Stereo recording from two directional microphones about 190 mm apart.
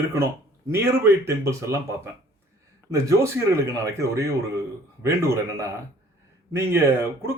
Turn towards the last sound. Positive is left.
turn(degrees=-15)  # may be behind; listen again after turning